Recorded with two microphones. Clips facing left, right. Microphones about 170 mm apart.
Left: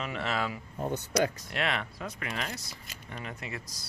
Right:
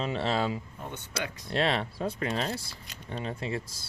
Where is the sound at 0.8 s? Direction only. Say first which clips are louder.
Left 12 dB; 40° left (ahead or behind).